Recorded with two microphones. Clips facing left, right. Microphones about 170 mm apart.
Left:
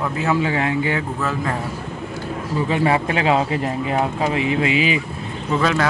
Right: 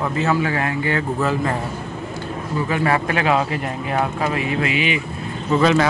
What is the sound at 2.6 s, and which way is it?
Speech, 20° left (ahead or behind).